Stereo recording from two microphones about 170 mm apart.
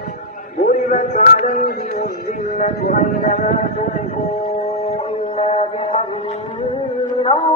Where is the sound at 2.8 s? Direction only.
50° left (ahead or behind).